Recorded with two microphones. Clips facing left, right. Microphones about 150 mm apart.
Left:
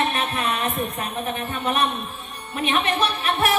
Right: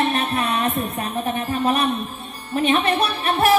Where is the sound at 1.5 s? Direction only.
30° right (ahead or behind).